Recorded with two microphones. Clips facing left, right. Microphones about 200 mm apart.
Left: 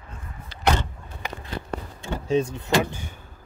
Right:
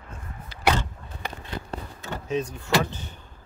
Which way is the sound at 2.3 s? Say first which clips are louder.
Left 5 dB; 25° left (ahead or behind).